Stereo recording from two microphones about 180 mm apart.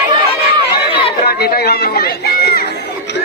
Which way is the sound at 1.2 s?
60° left (ahead or behind).